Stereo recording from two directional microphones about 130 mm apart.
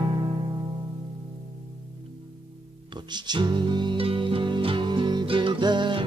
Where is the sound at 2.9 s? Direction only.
35° right (ahead or behind).